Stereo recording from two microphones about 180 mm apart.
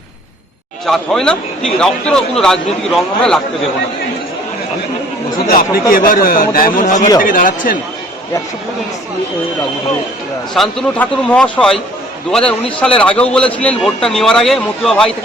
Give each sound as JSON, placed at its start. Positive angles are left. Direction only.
{"t": 0.9, "sound": "a man's voice", "side_deg": 5}
{"t": 5.5, "sound": "a man's voice", "side_deg": 50}
{"t": 10.5, "sound": "a man's voice", "side_deg": 5}